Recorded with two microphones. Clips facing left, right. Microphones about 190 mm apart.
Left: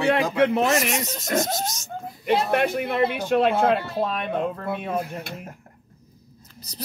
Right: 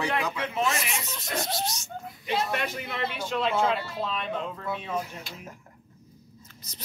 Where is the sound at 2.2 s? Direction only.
60° left (ahead or behind).